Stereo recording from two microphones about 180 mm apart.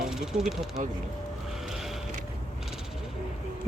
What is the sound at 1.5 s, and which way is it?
Vehicle, centre (ahead or behind).